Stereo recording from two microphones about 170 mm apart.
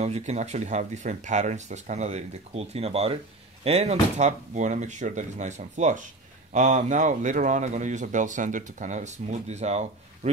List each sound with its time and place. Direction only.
0.0 s speech: 40° right (ahead or behind)